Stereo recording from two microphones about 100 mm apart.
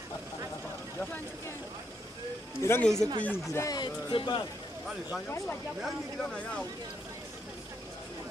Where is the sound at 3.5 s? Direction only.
35° left (ahead or behind).